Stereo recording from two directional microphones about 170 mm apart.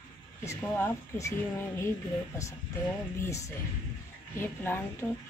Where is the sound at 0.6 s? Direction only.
15° left (ahead or behind).